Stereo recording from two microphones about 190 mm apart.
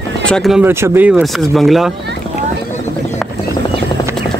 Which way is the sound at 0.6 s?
10° right (ahead or behind).